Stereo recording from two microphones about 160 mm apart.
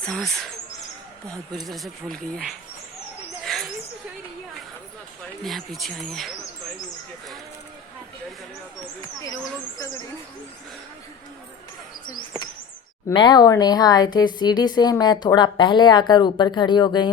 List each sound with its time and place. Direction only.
0.1 s speech: centre (ahead or behind)
3.4 s rodents: centre (ahead or behind)
5.4 s speech: centre (ahead or behind)
13.1 s speech: 25° left (ahead or behind)